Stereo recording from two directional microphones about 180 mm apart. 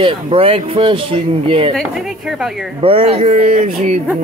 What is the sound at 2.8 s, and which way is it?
Speech, 30° right (ahead or behind).